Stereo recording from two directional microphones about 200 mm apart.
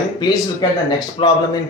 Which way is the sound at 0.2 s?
20° left (ahead or behind).